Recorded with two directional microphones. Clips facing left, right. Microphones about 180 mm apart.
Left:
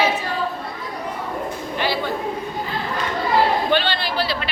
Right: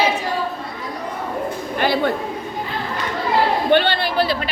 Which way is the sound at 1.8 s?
50° right (ahead or behind).